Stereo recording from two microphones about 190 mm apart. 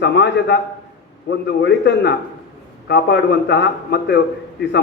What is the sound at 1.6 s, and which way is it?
A man's voice, 65° left (ahead or behind).